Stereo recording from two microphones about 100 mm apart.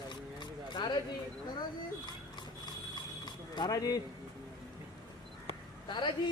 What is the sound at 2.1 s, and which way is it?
Dog, 45° left (ahead or behind).